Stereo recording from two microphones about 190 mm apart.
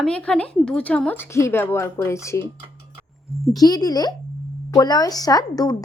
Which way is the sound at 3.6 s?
20° left (ahead or behind).